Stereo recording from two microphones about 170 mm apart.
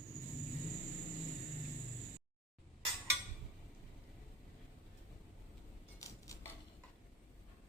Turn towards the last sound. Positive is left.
turn(degrees=20)  # may be behind; listen again after turning